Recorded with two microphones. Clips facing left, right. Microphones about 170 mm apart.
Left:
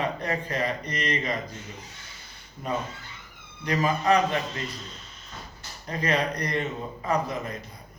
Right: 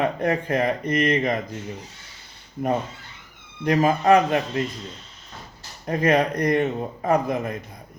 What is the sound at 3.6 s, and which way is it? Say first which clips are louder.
Speech: right 6 dB; 50° right (ahead or behind).